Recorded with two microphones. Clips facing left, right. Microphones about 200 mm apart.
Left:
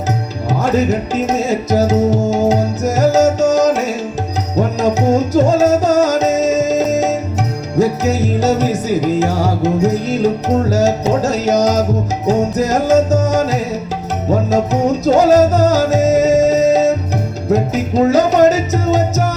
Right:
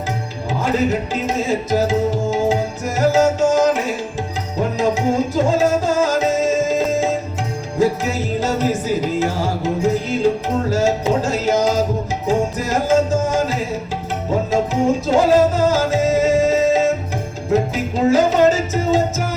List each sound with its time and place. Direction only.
1.1 s music: 40° left (ahead or behind)
4.8 s music: 40° left (ahead or behind)